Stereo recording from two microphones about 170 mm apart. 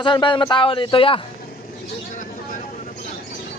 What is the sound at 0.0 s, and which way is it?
Speech, 30° left (ahead or behind).